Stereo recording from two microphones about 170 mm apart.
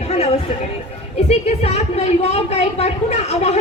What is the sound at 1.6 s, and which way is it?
Speech, 40° left (ahead or behind).